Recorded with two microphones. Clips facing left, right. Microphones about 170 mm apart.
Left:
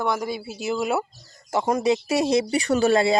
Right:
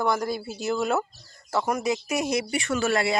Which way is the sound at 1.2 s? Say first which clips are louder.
Left 3 dB; 20° left (ahead or behind).